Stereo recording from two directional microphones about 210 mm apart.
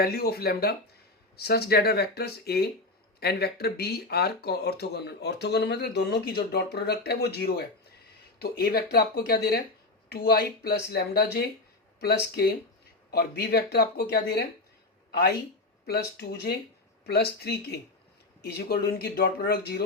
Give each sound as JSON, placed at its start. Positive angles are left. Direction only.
{"t": 0.0, "sound": "speech", "side_deg": 45}